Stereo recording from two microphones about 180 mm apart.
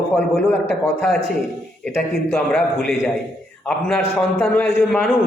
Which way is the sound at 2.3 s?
5° left (ahead or behind).